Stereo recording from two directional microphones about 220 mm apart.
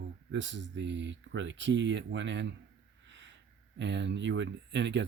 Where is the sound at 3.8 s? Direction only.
55° right (ahead or behind).